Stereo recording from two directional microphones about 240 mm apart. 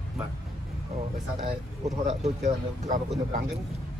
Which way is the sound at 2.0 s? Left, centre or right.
Right.